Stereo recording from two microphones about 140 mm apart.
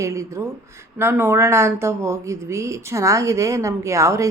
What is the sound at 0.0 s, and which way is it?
Speech, 20° right (ahead or behind).